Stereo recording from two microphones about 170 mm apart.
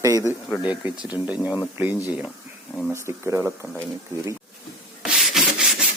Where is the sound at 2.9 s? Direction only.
15° right (ahead or behind).